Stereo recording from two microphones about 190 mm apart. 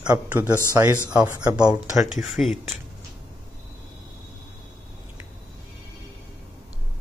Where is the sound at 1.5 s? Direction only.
5° right (ahead or behind).